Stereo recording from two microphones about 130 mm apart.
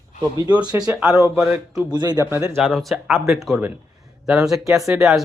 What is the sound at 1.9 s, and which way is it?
Speech, 30° right (ahead or behind).